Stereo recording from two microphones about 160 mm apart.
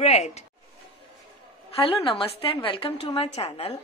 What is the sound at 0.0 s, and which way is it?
Speech, 40° left (ahead or behind).